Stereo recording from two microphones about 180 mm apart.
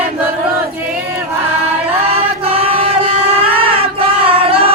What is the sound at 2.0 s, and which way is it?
Choir, 35° right (ahead or behind).